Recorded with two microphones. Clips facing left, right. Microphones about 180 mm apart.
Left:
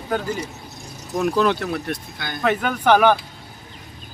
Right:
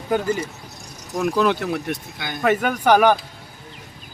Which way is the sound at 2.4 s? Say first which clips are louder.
Right 2 dB; 5° right (ahead or behind).